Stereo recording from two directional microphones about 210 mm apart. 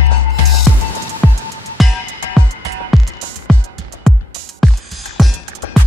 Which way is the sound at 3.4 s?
Centre (ahead or behind).